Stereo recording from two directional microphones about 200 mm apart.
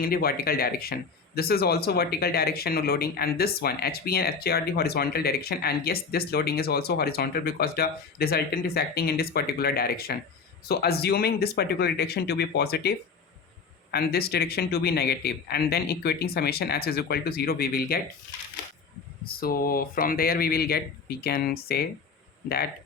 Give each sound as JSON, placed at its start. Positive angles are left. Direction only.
{"t": 0.0, "sound": "speech", "side_deg": 50}
{"t": 13.9, "sound": "speech", "side_deg": 50}
{"t": 19.2, "sound": "speech", "side_deg": 50}